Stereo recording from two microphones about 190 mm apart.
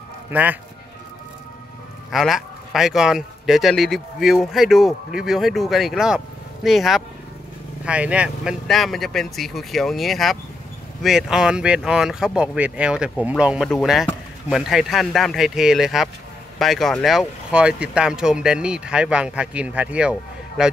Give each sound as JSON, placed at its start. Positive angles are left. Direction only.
{"t": 0.3, "sound": "speech", "side_deg": -10}
{"t": 2.0, "sound": "speech", "side_deg": 0}